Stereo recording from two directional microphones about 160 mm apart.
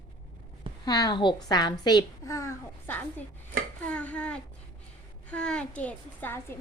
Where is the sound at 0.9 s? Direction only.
25° left (ahead or behind).